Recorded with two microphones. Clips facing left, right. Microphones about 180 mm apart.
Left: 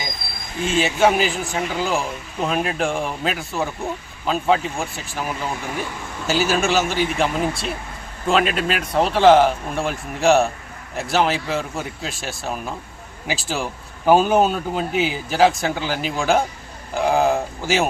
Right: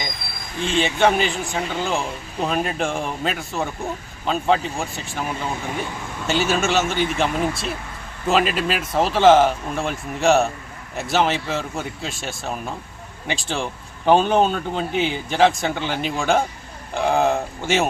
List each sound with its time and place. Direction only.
0.6 s a man's voice: 5° left (ahead or behind)